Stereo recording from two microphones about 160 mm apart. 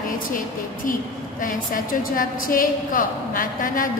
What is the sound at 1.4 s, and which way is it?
A woman's voice, 55° left (ahead or behind).